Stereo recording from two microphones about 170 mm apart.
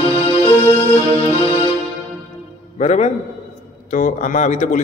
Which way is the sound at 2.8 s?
40° left (ahead or behind).